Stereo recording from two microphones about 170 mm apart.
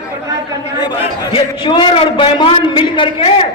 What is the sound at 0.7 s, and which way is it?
A man's voice, 25° left (ahead or behind).